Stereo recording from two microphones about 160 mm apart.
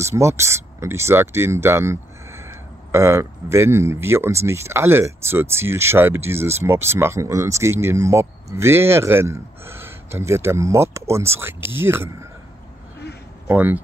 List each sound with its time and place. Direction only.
0.0 s speech: 15° right (ahead or behind)
13.5 s speech: 10° right (ahead or behind)